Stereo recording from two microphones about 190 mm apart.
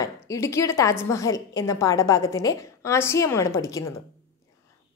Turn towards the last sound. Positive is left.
turn(degrees=15)  # may be behind; listen again after turning